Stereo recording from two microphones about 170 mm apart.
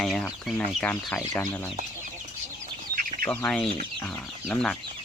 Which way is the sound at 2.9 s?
50° right (ahead or behind).